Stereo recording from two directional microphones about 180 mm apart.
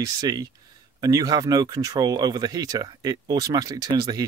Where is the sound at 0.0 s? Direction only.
20° right (ahead or behind).